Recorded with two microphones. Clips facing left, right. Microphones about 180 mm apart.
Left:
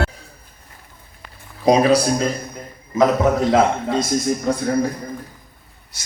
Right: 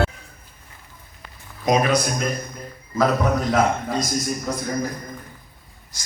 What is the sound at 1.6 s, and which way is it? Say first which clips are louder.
A man's voice: left 5 dB; 30° left (ahead or behind).